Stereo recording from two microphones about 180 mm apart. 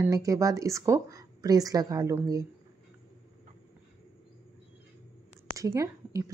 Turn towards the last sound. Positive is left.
turn(degrees=-15)  # may be behind; listen again after turning